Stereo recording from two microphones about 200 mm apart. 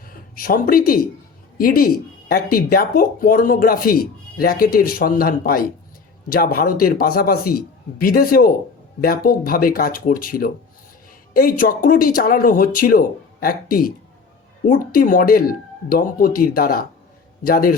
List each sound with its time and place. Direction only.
0.0 s speech: 45° left (ahead or behind)